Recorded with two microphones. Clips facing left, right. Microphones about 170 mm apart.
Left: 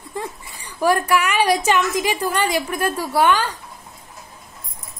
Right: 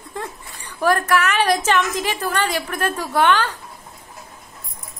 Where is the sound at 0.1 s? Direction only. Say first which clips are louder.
Left 2 dB; 10° left (ahead or behind).